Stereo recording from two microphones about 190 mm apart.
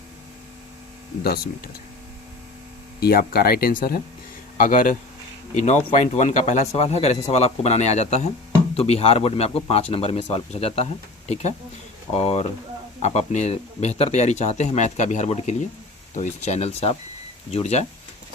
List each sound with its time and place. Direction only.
1.2 s speech: 55° left (ahead or behind)
3.0 s a man's voice: 50° left (ahead or behind); by 10.8 s 30° left (ahead or behind)
12.1 s speech: 35° left (ahead or behind)